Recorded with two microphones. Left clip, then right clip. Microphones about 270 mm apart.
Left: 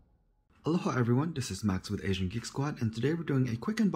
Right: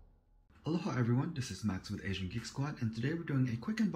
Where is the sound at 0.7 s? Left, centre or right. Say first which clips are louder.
Left 6 dB; centre.